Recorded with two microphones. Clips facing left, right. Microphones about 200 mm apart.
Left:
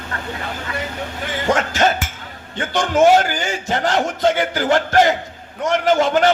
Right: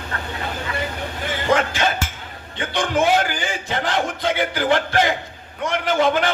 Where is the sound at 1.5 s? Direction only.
45° left (ahead or behind).